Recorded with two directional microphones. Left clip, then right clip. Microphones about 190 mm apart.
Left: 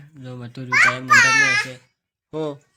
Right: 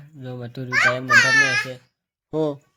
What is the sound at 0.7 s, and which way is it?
Speech, 10° right (ahead or behind).